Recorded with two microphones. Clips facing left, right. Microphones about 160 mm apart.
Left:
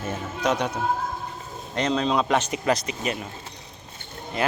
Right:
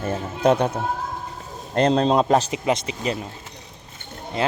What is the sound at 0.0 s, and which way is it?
Speech, 55° right (ahead or behind).